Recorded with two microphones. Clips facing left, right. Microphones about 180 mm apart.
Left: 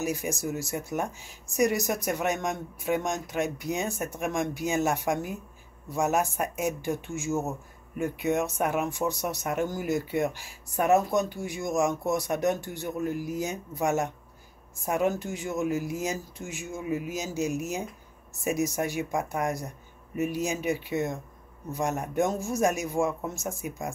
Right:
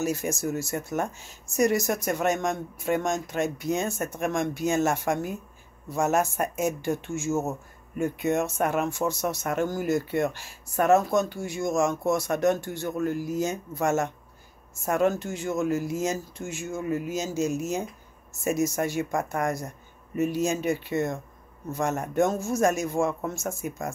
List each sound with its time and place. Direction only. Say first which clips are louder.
0.0 s a man's voice: right 3 dB; 15° left (ahead or behind)
8.5 s a man's voice: right 2 dB; 15° left (ahead or behind)